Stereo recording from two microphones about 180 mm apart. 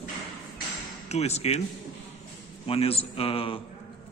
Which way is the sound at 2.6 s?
30° left (ahead or behind).